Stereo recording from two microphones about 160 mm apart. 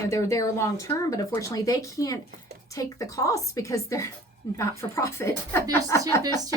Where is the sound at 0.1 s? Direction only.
20° left (ahead or behind).